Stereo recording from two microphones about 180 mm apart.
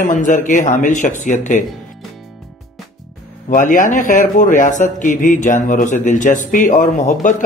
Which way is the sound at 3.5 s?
45° left (ahead or behind).